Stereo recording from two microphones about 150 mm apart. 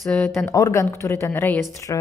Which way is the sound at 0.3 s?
20° left (ahead or behind).